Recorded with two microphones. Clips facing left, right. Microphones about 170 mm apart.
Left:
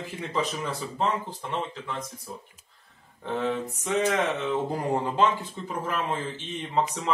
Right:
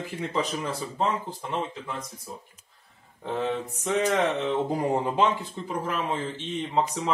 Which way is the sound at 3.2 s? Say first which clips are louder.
Even; 5° right (ahead or behind).